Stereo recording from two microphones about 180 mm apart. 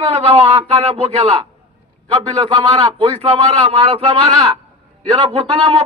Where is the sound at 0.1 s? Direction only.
35° right (ahead or behind).